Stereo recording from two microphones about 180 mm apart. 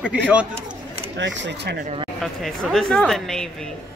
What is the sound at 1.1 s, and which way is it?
Speech, 90° right.